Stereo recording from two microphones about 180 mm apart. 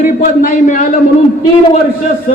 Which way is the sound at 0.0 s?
45° left (ahead or behind).